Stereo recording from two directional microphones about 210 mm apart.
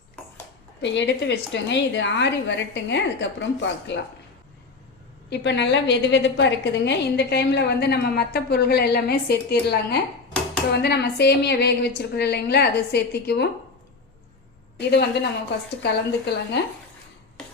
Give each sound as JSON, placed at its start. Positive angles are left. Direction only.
{"t": 0.8, "sound": "a woman's voice", "side_deg": 55}
{"t": 5.3, "sound": "a woman's voice", "side_deg": 55}
{"t": 14.8, "sound": "a woman's voice", "side_deg": 55}